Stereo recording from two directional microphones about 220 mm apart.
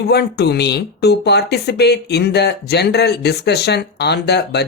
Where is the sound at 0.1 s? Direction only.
50° left (ahead or behind).